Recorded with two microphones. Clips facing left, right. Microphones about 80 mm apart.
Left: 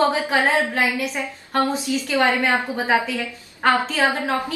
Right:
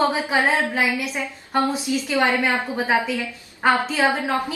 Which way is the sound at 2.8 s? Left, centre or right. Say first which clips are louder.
Even; centre.